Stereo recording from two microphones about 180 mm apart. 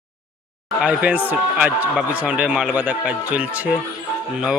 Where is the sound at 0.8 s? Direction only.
10° right (ahead or behind).